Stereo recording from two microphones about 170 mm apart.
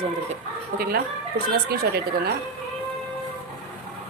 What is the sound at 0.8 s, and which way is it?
Speech, 60° right (ahead or behind).